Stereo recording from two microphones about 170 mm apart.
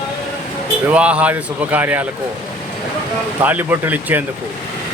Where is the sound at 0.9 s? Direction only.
5° right (ahead or behind).